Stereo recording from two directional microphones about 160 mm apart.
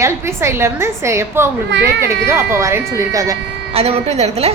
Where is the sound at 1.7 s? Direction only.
90° right.